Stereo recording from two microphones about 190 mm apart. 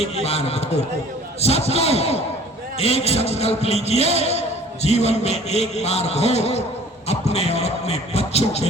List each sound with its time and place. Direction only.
0.0 s a man's voice: 35° left (ahead or behind)